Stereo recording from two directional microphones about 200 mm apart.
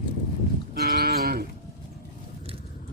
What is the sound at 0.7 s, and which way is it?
Livestock, 50° right (ahead or behind).